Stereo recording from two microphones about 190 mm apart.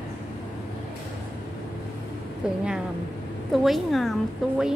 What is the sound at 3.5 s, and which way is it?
Speech, centre (ahead or behind).